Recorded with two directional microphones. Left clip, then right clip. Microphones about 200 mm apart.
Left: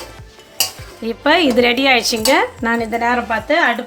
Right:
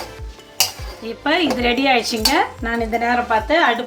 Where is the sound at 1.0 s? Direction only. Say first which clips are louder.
Left 5 dB; 45° left (ahead or behind).